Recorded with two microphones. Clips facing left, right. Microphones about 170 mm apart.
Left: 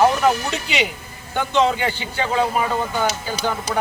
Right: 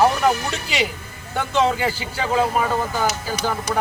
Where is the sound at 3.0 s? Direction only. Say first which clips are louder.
Even; 30° left (ahead or behind).